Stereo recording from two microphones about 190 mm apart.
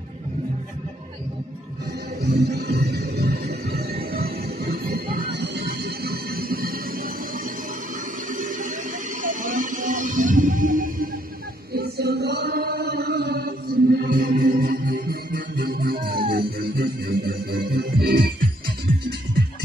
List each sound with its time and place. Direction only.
2.2 s music: 60° right (ahead or behind)
8.3 s a sound: 45° right (ahead or behind)
9.2 s music: 45° right (ahead or behind)
11.7 s chant: 55° right (ahead or behind)